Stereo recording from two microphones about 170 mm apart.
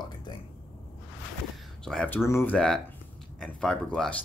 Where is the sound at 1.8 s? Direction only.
5° left (ahead or behind).